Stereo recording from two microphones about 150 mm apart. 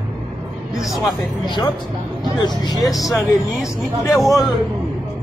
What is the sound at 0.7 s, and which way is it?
Speech, centre (ahead or behind).